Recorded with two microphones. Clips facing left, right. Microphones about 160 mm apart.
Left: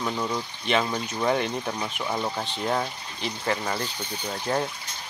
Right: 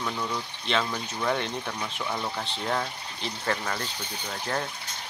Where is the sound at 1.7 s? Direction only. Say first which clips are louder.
Left 3 dB; 20° left (ahead or behind).